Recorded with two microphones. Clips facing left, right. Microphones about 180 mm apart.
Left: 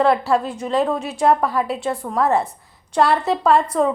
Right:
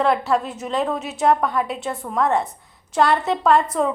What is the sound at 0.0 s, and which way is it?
A woman's voice, centre (ahead or behind).